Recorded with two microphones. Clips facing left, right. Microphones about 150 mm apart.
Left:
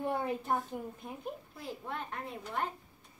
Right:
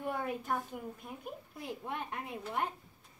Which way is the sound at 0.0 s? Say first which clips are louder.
Left 3 dB; 30° left (ahead or behind).